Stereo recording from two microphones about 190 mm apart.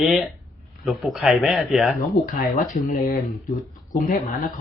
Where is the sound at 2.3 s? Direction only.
50° left (ahead or behind).